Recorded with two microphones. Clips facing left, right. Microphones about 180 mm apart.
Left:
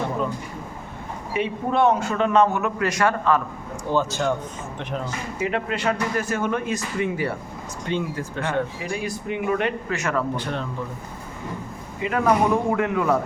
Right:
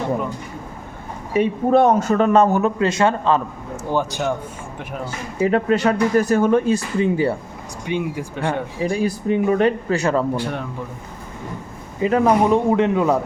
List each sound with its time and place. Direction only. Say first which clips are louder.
1.3 s speech: right 8 dB; 40° right (ahead or behind); by 3.4 s 25° right (ahead or behind)
5.4 s speech: right 9 dB; 40° right (ahead or behind)
7.9 s speech: right 3 dB; 15° right (ahead or behind)
8.8 s speech: right 8 dB; 35° right (ahead or behind)
10.3 s speech: right 3 dB; 10° right (ahead or behind)
12.0 s speech: right 4 dB; 30° right (ahead or behind)